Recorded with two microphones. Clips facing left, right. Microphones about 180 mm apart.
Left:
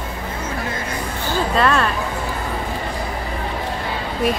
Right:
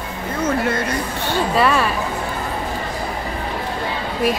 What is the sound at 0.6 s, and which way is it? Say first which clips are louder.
Speech: right 6 dB; 75° right (ahead or behind).